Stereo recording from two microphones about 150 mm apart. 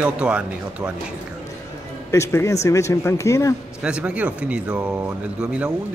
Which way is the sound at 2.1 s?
20° left (ahead or behind).